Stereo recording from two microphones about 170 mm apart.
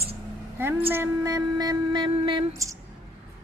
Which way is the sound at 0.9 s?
15° right (ahead or behind).